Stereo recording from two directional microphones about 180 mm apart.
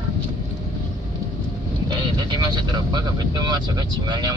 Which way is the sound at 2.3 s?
25° right (ahead or behind).